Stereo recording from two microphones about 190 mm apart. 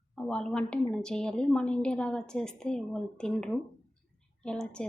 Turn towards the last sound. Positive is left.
turn(degrees=5)  # may be behind; listen again after turning